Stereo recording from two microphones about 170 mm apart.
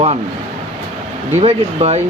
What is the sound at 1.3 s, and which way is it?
Speech, 40° right (ahead or behind).